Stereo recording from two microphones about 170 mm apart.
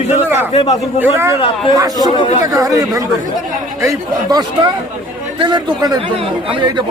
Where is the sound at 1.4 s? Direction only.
30° left (ahead or behind).